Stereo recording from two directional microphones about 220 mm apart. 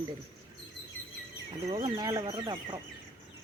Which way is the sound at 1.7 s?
20° right (ahead or behind).